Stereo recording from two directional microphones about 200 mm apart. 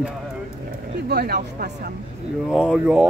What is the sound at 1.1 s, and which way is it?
Speech, 55° right (ahead or behind).